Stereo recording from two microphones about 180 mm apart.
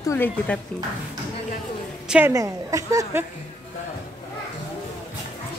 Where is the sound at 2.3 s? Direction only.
15° right (ahead or behind).